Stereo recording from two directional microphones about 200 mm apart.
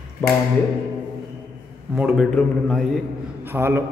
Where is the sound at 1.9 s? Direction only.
5° right (ahead or behind).